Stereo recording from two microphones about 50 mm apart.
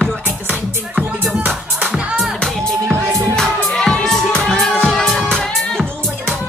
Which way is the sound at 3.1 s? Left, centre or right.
Right.